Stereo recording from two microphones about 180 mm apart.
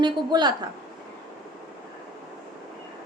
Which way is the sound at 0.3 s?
25° right (ahead or behind).